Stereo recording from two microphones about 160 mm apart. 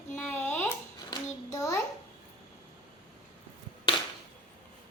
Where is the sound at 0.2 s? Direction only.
10° left (ahead or behind).